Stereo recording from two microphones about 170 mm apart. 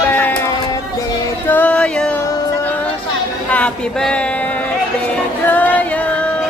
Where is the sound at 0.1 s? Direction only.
10° left (ahead or behind).